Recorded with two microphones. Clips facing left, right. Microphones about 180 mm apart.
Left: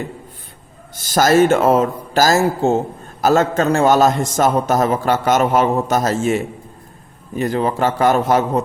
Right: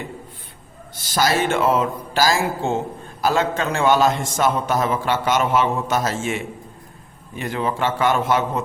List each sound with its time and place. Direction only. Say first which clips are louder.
1.1 s speech: left 7 dB; 45° left (ahead or behind)